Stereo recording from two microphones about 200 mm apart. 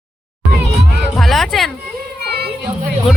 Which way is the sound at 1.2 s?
Centre (ahead or behind).